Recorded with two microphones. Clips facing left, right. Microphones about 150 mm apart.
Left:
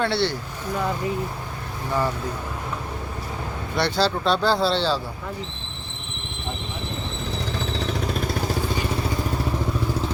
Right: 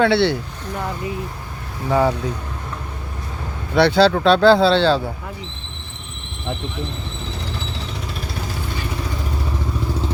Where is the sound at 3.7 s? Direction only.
65° right (ahead or behind).